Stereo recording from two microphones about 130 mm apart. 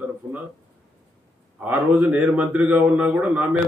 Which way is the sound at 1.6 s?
15° right (ahead or behind).